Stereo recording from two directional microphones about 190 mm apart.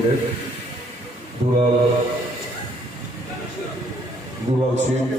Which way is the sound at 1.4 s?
35° right (ahead or behind).